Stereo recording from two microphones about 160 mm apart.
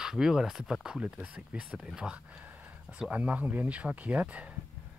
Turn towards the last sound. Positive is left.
turn(degrees=-10)  # may be behind; listen again after turning